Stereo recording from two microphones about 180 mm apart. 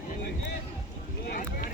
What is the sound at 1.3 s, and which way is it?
Boat, 55° left (ahead or behind).